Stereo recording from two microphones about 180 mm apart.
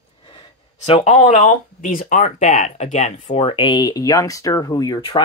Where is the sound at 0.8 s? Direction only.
40° left (ahead or behind).